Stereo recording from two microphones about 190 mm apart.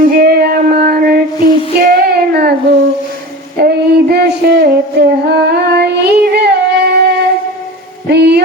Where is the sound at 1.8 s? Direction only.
50° right (ahead or behind).